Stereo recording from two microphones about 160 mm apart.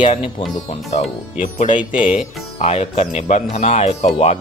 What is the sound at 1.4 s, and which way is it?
Speech, 50° left (ahead or behind).